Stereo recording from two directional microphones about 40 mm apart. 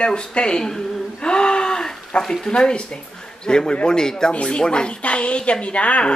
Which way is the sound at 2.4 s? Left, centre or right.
Left.